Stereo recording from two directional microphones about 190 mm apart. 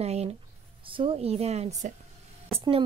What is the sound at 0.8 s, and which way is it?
Speech, 30° right (ahead or behind).